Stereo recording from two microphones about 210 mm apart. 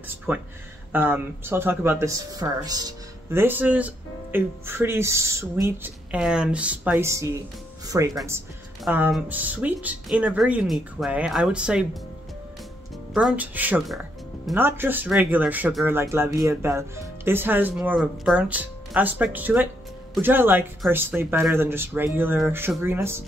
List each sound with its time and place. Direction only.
0.9 s speech: 10° right (ahead or behind)
8.8 s speech: 5° right (ahead or behind)
13.1 s speech: 5° right (ahead or behind)